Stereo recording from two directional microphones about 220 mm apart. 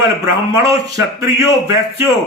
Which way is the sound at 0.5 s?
15° right (ahead or behind).